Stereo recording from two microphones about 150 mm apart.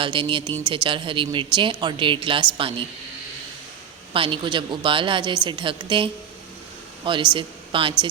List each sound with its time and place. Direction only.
0.0 s speech: 35° right (ahead or behind)
4.1 s speech: 35° right (ahead or behind)